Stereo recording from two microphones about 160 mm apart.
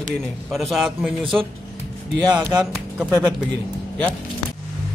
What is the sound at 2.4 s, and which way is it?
Speech, 15° right (ahead or behind).